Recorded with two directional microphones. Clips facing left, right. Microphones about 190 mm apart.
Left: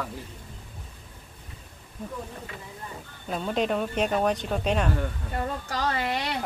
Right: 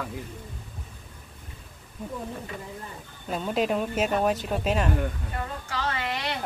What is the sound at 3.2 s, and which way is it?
Speech, centre (ahead or behind).